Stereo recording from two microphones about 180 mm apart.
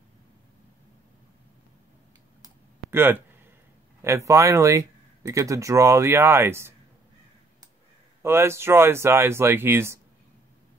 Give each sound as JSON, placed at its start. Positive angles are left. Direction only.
{"t": 2.4, "sound": "a sound", "side_deg": -15}
{"t": 4.0, "sound": "speech", "side_deg": -15}
{"t": 8.2, "sound": "speech", "side_deg": -15}